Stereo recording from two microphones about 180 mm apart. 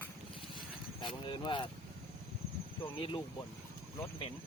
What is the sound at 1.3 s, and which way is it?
Speech, 25° left (ahead or behind).